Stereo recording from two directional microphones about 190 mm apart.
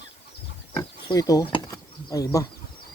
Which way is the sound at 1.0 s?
20° left (ahead or behind).